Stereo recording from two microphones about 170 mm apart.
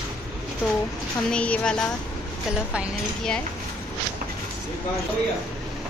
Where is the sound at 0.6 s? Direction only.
5° right (ahead or behind).